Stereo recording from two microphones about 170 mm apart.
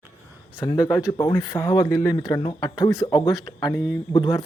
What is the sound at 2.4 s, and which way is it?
Speech, 25° left (ahead or behind).